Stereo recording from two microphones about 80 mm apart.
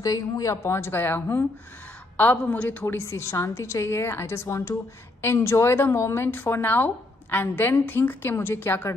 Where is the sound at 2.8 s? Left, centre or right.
Left.